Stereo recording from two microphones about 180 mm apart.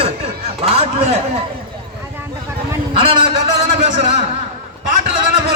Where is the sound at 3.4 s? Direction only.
40° right (ahead or behind).